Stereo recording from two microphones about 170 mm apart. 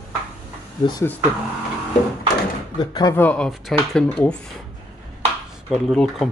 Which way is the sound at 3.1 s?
10° left (ahead or behind).